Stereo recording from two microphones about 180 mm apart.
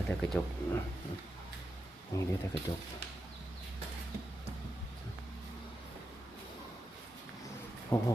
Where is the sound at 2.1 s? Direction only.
20° left (ahead or behind).